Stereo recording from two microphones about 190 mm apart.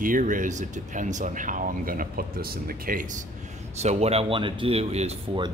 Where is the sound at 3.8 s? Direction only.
35° right (ahead or behind).